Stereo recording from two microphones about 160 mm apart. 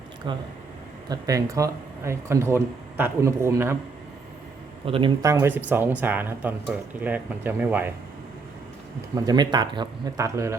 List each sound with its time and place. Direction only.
0.3 s a man's voice: 30° right (ahead or behind)
4.9 s a man's voice: 35° right (ahead or behind)
5.2 s speech: 15° right (ahead or behind)
9.1 s speech: 25° right (ahead or behind)